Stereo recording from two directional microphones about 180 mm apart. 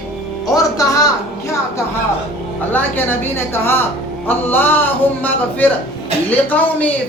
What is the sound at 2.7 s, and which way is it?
A man's voice, 10° left (ahead or behind).